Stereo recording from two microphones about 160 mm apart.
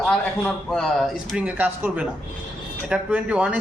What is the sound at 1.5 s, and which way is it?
Speech, 10° right (ahead or behind).